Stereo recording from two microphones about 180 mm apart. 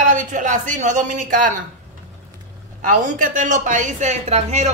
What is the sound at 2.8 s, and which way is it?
Speech, 45° right (ahead or behind).